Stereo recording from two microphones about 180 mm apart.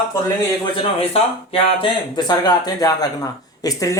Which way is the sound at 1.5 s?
30° left (ahead or behind).